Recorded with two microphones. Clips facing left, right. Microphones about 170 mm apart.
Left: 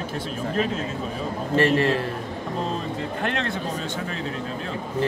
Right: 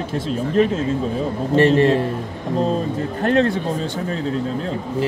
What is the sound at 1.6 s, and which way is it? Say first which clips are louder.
Speech: right 6 dB; 20° right (ahead or behind).